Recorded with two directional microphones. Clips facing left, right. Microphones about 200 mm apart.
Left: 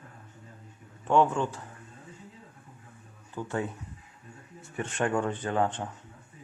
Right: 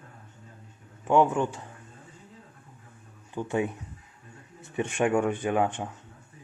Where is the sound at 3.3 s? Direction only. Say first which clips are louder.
Right 4 dB; 15° right (ahead or behind).